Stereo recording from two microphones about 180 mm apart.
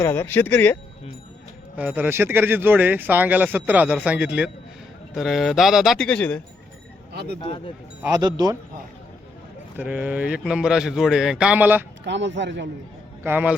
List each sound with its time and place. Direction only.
0.0 s speech: 15° left (ahead or behind)
1.7 s speech: 10° right (ahead or behind); by 6.4 s 5° left (ahead or behind)
7.1 s speech: 65° right (ahead or behind)
8.0 s speech: 20° right (ahead or behind)
9.7 s speech: 10° right (ahead or behind)
12.0 s speech: 85° right
13.2 s speech: 10° right (ahead or behind)